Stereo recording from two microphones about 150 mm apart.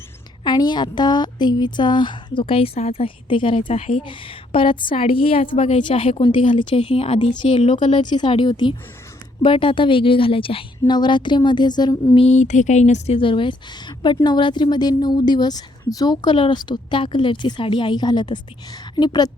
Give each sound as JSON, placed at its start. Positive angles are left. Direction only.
{"t": 0.4, "sound": "a woman's voice", "side_deg": 30}
{"t": 12.2, "sound": "a woman's voice", "side_deg": 50}